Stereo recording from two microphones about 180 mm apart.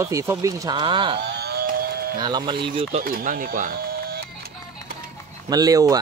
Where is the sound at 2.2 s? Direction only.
25° right (ahead or behind).